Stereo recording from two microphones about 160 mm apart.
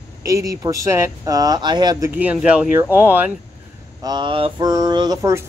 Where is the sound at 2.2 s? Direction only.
10° right (ahead or behind).